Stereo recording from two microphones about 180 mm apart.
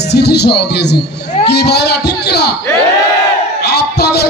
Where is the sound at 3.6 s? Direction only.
65° left (ahead or behind).